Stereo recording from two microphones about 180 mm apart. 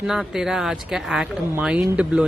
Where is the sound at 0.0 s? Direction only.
5° right (ahead or behind).